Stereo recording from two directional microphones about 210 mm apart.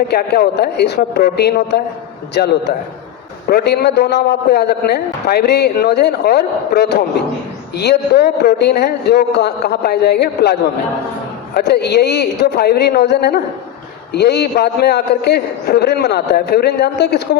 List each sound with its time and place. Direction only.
0.1 s a man's voice: 50° left (ahead or behind)